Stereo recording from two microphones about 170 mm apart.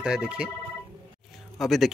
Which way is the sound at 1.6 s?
Centre (ahead or behind).